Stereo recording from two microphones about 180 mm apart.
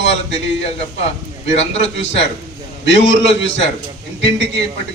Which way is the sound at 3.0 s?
90° left.